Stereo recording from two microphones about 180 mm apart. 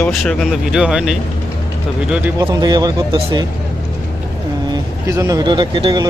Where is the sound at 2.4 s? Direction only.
25° right (ahead or behind).